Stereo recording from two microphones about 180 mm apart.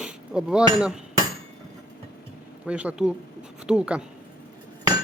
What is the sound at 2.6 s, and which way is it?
Speech, 5° right (ahead or behind).